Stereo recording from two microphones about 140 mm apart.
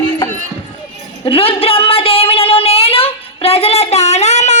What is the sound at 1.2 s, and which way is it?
Speech, 40° left (ahead or behind).